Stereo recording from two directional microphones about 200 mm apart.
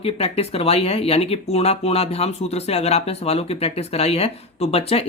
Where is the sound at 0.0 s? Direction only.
30° left (ahead or behind).